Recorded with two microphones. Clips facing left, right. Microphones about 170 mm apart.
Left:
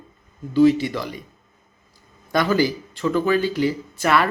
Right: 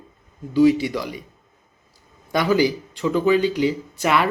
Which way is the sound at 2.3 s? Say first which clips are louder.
Right 1 dB; 15° right (ahead or behind).